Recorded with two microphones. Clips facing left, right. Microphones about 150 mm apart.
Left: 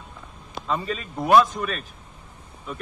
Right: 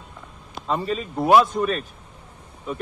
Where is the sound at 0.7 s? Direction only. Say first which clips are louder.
Right 3 dB; 5° right (ahead or behind).